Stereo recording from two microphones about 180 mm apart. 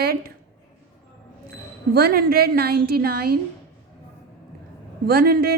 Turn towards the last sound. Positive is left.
turn(degrees=-55)  # may be behind; listen again after turning